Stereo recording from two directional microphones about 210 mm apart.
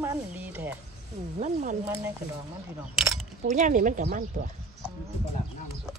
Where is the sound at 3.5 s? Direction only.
35° right (ahead or behind).